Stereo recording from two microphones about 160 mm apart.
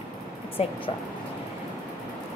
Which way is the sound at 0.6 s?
40° left (ahead or behind).